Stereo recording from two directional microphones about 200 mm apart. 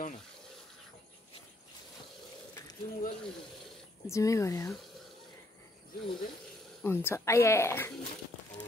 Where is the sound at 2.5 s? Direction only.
20° left (ahead or behind).